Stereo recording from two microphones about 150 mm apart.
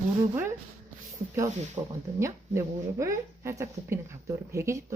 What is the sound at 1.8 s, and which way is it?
Speech, 30° right (ahead or behind).